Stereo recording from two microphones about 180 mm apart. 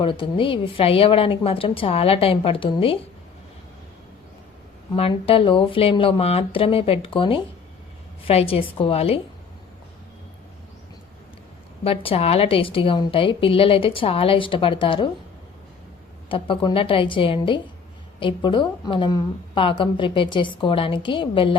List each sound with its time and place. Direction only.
0.0 s a woman's voice: 30° left (ahead or behind)
4.9 s a woman's voice: 30° left (ahead or behind)
11.8 s a woman's voice: 30° left (ahead or behind)
16.3 s a woman's voice: 30° left (ahead or behind)